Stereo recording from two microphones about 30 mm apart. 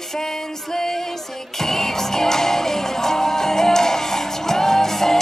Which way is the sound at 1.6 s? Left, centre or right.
Centre.